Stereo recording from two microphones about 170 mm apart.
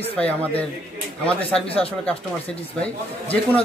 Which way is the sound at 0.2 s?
10° left (ahead or behind).